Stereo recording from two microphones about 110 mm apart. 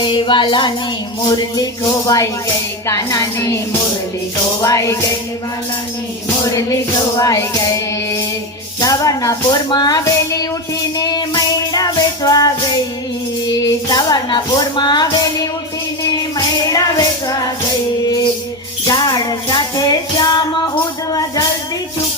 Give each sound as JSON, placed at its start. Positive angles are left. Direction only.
{"t": 0.0, "sound": "music", "side_deg": 45}
{"t": 1.4, "sound": "speech", "side_deg": 35}
{"t": 6.4, "sound": "speech", "side_deg": 30}
{"t": 8.8, "sound": "speech", "side_deg": 30}
{"t": 10.9, "sound": "music", "side_deg": 40}
{"t": 13.5, "sound": "speech", "side_deg": 40}
{"t": 16.7, "sound": "music", "side_deg": 35}
{"t": 18.9, "sound": "music", "side_deg": 40}
{"t": 21.1, "sound": "speech", "side_deg": 35}